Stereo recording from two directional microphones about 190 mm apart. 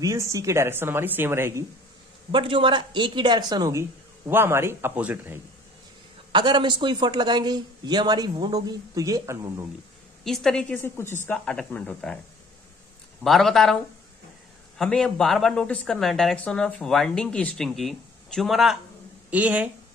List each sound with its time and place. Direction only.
0.0 s a woman's voice: 15° right (ahead or behind)
2.3 s a man's voice: 25° right (ahead or behind); by 5.4 s 10° right (ahead or behind)
6.3 s a man's voice: 25° right (ahead or behind)
10.2 s speech: centre (ahead or behind)
13.2 s speech: centre (ahead or behind)
14.8 s a woman's voice: 5° left (ahead or behind)